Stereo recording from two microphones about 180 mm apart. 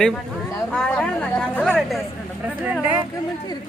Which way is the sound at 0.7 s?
5° left (ahead or behind).